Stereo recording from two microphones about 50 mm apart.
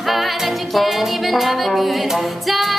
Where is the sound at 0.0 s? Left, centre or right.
Centre.